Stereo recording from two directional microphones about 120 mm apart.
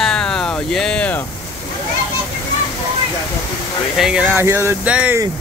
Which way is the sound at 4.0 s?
5° right (ahead or behind).